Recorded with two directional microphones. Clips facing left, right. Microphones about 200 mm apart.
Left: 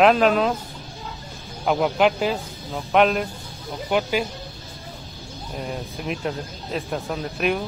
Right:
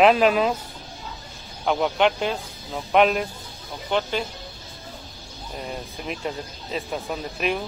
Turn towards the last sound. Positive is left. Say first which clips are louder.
# left 2 dB
turn(degrees=0)  # may be behind; listen again after turning